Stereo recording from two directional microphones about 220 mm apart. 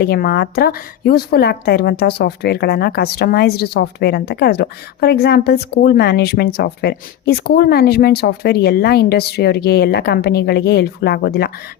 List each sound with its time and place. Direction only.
0.0 s a woman's voice: 45° left (ahead or behind)